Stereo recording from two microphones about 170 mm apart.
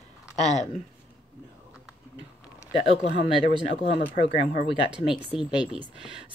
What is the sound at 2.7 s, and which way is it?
Speech, 35° left (ahead or behind).